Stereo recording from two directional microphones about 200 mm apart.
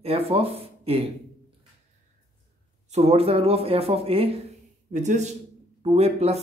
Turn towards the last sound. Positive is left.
turn(degrees=-30)  # may be behind; listen again after turning